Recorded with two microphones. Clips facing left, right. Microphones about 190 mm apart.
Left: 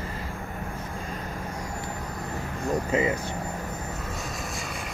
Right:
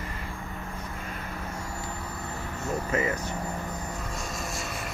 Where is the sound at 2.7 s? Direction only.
20° left (ahead or behind).